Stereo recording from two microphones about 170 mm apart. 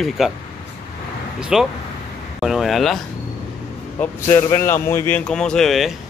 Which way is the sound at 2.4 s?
Centre (ahead or behind).